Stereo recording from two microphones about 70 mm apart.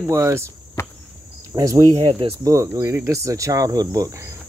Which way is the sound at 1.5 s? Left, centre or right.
Right.